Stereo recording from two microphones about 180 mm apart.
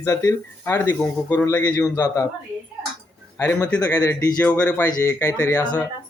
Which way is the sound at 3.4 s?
10° left (ahead or behind).